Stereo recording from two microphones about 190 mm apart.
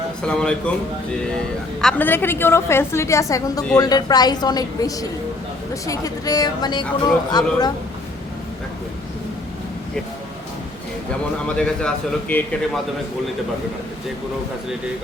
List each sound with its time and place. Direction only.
0.2 s a man's voice: 5° left (ahead or behind)
1.8 s a woman's voice: 5° left (ahead or behind)
11.4 s a man's voice: 5° left (ahead or behind)